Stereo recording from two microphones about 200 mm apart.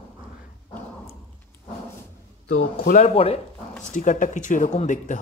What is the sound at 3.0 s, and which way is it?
Speech, 30° left (ahead or behind).